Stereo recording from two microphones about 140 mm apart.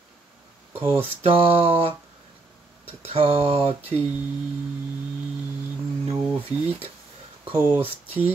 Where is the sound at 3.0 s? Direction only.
45° right (ahead or behind).